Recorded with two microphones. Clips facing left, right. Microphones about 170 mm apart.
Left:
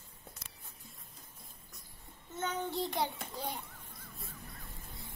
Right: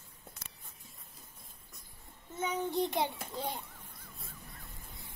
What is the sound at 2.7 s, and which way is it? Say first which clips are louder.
Speech: right 3 dB; 20° right (ahead or behind).